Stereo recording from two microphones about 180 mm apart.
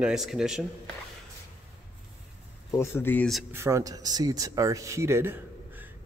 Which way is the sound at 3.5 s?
15° right (ahead or behind).